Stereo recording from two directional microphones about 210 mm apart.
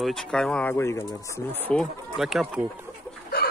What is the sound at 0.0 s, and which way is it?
Speech, 5° left (ahead or behind).